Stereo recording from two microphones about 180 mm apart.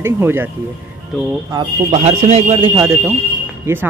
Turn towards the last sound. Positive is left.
turn(degrees=-10)  # may be behind; listen again after turning